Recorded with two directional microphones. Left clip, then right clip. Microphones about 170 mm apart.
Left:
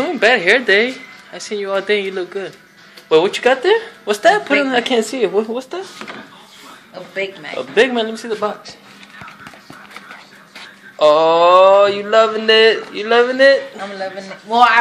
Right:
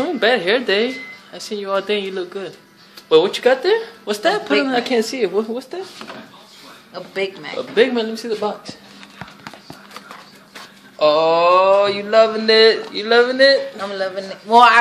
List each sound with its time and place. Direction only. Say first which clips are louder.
0.0 s a woman's voice: left 3 dB; 5° right (ahead or behind)
6.9 s speech: even; 30° right (ahead or behind)
7.7 s speech: left 2 dB; 10° left (ahead or behind)
11.0 s speech: left 3 dB; 10° left (ahead or behind)
13.9 s speech: right 4 dB; 45° right (ahead or behind)